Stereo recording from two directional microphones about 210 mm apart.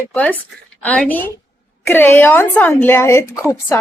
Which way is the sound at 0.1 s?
5° left (ahead or behind).